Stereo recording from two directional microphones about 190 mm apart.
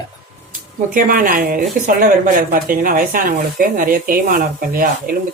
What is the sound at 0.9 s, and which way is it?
A woman's voice, 45° right (ahead or behind).